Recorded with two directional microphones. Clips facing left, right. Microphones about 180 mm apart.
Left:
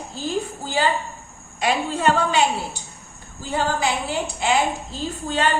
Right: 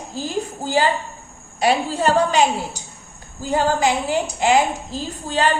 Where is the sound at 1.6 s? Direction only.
35° right (ahead or behind).